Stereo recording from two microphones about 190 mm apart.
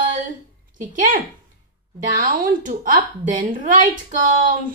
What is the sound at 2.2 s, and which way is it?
A woman's voice, 45° right (ahead or behind).